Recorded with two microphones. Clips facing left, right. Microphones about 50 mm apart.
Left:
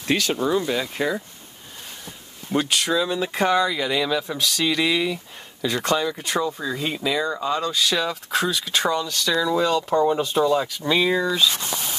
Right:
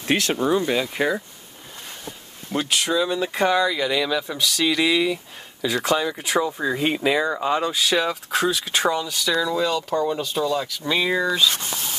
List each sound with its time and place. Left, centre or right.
0.0 s speech: right
2.0 s speech: centre
6.6 s speech: right
7.7 s speech: centre
9.3 s speech: centre